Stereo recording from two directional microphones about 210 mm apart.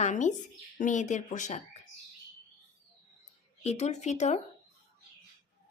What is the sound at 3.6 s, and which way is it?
Speech, 30° left (ahead or behind).